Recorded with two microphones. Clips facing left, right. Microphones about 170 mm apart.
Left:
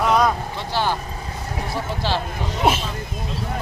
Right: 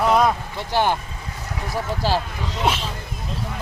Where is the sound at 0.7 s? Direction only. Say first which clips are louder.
Right 3 dB; 15° right (ahead or behind).